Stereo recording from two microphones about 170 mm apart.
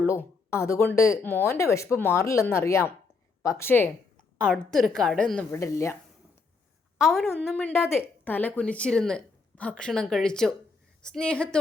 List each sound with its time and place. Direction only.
0.0 s a woman's voice: 15° left (ahead or behind)
5.5 s speech: 15° left (ahead or behind)
7.0 s a woman's voice: centre (ahead or behind)